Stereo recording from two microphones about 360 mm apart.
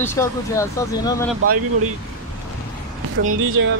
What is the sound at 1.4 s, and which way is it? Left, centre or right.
Speech, right.